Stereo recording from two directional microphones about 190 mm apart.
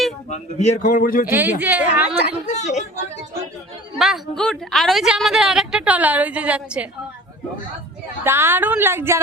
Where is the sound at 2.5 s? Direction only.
35° left (ahead or behind).